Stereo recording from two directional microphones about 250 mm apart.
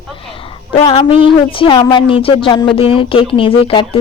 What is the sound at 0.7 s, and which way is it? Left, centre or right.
Speech, left.